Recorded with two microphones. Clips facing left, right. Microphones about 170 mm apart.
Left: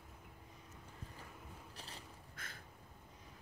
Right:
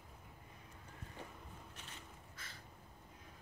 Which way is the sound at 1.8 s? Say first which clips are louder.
Left 2 dB; 35° left (ahead or behind).